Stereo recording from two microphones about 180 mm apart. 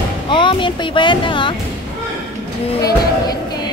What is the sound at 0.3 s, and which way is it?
Speech, 25° left (ahead or behind).